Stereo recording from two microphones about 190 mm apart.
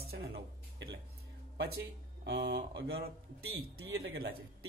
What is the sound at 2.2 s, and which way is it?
A man's voice, 60° right (ahead or behind).